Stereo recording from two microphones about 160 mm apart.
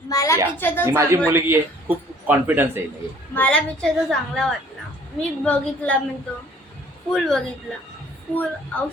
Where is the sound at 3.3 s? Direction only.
5° left (ahead or behind).